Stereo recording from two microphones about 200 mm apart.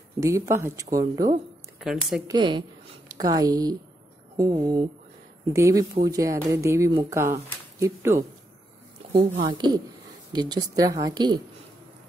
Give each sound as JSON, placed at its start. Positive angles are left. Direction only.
{"t": 0.2, "sound": "speech", "side_deg": -15}
{"t": 1.8, "sound": "speech", "side_deg": 0}
{"t": 2.2, "sound": "a woman's voice", "side_deg": -20}
{"t": 9.1, "sound": "a woman's voice", "side_deg": -30}